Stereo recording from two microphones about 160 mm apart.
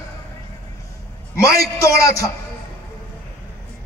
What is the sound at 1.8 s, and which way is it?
Speech, 70° right (ahead or behind).